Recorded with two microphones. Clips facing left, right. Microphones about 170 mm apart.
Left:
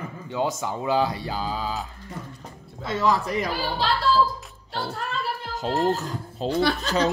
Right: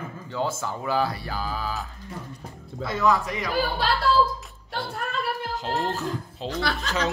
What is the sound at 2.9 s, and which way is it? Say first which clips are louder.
Speech: even; 30° left (ahead or behind).